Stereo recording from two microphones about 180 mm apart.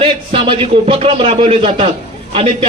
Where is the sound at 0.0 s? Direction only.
30° right (ahead or behind).